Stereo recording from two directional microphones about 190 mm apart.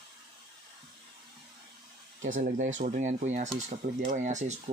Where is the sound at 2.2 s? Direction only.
40° right (ahead or behind).